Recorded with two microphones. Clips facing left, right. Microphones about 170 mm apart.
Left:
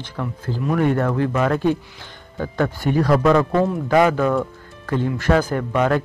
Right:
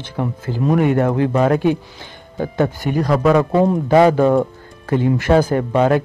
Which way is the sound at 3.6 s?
30° right (ahead or behind).